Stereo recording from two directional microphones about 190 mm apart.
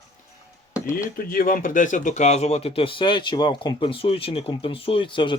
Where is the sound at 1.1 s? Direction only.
50° left (ahead or behind).